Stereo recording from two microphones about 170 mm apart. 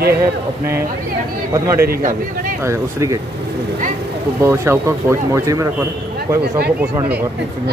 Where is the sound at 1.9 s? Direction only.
50° right (ahead or behind).